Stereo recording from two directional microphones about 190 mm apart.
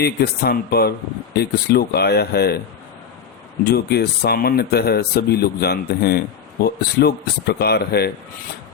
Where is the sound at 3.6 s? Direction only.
55° left (ahead or behind).